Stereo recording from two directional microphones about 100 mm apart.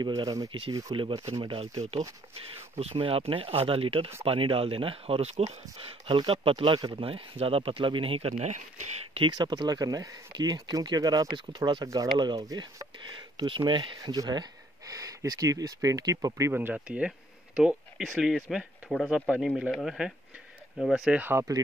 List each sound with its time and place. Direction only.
0.0 s speech: 45° right (ahead or behind)
0.5 s speech: 55° right (ahead or behind)
1.6 s speech: 90° right
2.8 s speech: 80° right
9.4 s speech: 45° right (ahead or behind)
16.5 s speech: 15° right (ahead or behind)
21.2 s speech: 25° right (ahead or behind)